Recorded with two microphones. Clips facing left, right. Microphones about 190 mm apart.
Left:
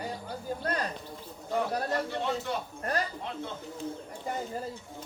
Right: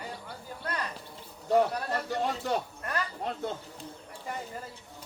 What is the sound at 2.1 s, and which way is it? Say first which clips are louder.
Speech: right 2 dB; 45° right (ahead or behind).